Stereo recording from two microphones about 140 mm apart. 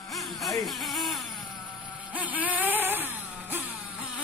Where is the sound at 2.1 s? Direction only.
10° right (ahead or behind).